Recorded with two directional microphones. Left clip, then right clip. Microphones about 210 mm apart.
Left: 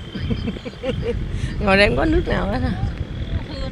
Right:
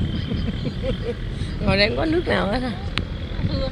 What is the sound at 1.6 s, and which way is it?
Speech, 30° left (ahead or behind).